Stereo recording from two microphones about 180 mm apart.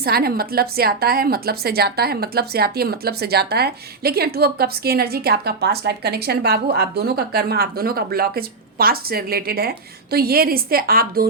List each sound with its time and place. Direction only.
0.0 s a woman's voice: 60° right (ahead or behind)